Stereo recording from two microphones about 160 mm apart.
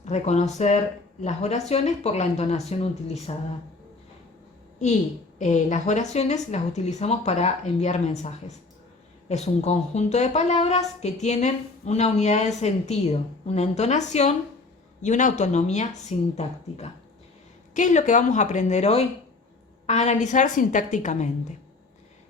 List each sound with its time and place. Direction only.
0.0 s a woman's voice: 45° left (ahead or behind)
5.4 s a woman's voice: 50° left (ahead or behind)